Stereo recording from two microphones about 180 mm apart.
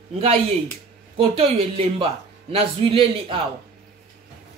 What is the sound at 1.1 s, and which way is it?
Speech, 30° right (ahead or behind).